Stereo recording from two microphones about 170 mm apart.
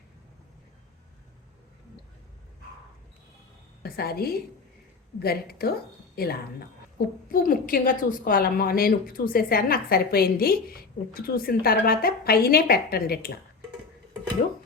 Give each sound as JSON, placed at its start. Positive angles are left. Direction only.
{"t": 3.8, "sound": "a woman's voice", "side_deg": 65}